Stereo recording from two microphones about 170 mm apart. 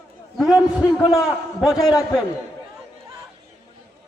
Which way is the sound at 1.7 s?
25° left (ahead or behind).